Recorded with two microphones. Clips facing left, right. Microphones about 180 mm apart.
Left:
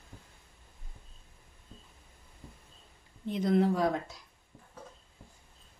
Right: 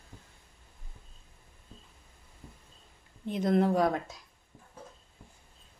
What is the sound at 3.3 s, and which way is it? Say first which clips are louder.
Speech: right 1 dB; 50° right (ahead or behind).